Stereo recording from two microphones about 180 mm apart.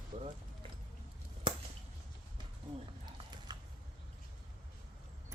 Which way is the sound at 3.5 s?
25° right (ahead or behind).